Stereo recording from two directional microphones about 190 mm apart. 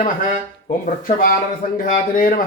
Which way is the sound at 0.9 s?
45° left (ahead or behind).